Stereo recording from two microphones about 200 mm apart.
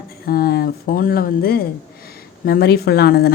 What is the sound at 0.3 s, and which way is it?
A woman's voice, 50° left (ahead or behind).